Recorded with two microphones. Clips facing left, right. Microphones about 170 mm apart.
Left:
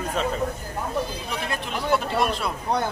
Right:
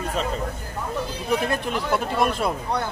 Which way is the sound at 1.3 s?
50° right (ahead or behind).